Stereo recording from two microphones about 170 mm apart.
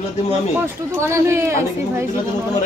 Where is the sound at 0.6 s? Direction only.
15° right (ahead or behind).